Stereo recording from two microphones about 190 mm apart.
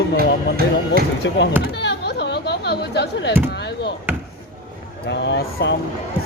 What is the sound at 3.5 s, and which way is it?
Speech, 60° left (ahead or behind).